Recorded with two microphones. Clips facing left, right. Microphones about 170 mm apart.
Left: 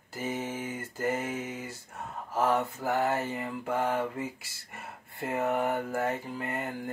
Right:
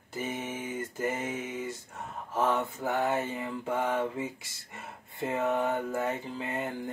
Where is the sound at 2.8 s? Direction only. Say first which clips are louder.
Right 1 dB; 20° right (ahead or behind).